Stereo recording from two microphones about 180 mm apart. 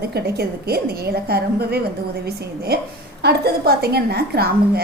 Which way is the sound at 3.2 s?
65° right (ahead or behind).